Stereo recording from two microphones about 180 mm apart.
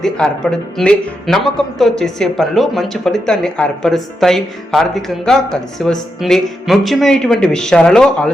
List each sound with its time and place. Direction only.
0.0 s speech: 5° left (ahead or behind)